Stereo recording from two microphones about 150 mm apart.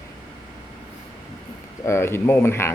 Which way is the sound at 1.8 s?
15° left (ahead or behind).